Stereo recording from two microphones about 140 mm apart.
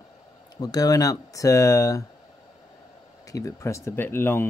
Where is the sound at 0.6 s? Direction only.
25° left (ahead or behind).